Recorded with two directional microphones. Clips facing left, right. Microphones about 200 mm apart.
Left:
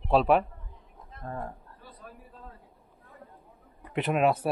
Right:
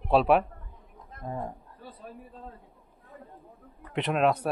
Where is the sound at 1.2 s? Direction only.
15° right (ahead or behind).